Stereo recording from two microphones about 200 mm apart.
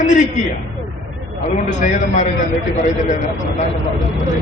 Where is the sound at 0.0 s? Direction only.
40° left (ahead or behind).